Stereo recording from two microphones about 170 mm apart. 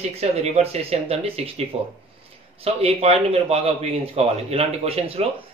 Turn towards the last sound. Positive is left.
turn(degrees=-35)  # may be behind; listen again after turning